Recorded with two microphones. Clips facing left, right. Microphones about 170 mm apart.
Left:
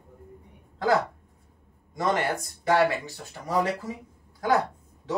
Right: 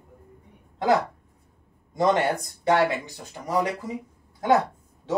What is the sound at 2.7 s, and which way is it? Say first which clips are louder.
Speech: right 1 dB; 20° right (ahead or behind).